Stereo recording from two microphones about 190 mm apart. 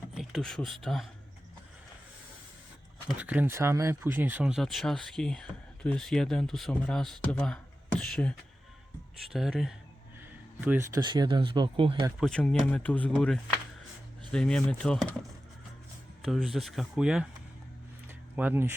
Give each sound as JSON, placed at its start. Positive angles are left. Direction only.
{"t": 0.1, "sound": "speech", "side_deg": 0}
{"t": 3.1, "sound": "speech", "side_deg": -10}
{"t": 12.2, "sound": "speech", "side_deg": 5}
{"t": 16.2, "sound": "speech", "side_deg": 0}
{"t": 18.1, "sound": "a sound", "side_deg": -10}